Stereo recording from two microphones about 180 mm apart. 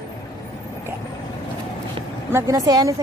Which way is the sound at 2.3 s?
15° right (ahead or behind).